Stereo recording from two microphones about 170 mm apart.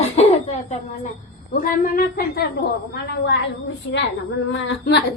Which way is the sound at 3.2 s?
85° left.